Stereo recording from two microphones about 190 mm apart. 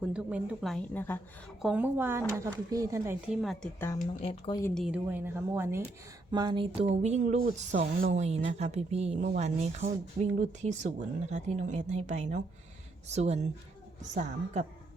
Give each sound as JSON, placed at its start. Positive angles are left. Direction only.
{"t": 0.0, "sound": "speech", "side_deg": -5}
{"t": 0.9, "sound": "a woman's voice", "side_deg": 10}
{"t": 1.6, "sound": "speech", "side_deg": -10}
{"t": 3.4, "sound": "speech", "side_deg": 5}
{"t": 4.2, "sound": "speech", "side_deg": 25}
{"t": 4.6, "sound": "speech", "side_deg": 0}
{"t": 6.3, "sound": "speech", "side_deg": -25}
{"t": 6.9, "sound": "speech", "side_deg": -35}